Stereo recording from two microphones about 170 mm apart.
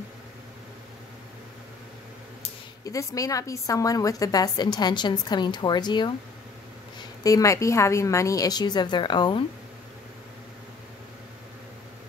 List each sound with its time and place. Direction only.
2.8 s a woman's voice: 20° left (ahead or behind)
7.2 s a woman's voice: 20° left (ahead or behind)